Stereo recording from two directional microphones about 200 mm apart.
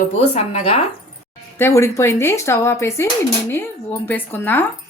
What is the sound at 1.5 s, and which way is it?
Speech, 15° left (ahead or behind).